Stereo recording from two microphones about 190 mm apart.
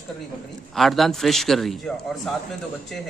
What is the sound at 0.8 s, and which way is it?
Speech, centre (ahead or behind).